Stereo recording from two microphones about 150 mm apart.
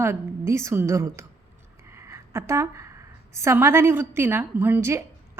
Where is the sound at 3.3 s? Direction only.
20° right (ahead or behind).